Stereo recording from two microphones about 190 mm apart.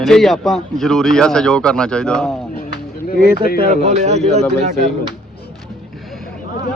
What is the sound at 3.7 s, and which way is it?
Speech, 35° right (ahead or behind).